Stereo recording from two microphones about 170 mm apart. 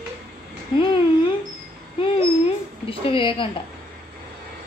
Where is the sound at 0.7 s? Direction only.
30° left (ahead or behind).